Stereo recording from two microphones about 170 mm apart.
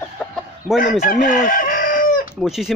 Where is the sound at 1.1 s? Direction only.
50° left (ahead or behind).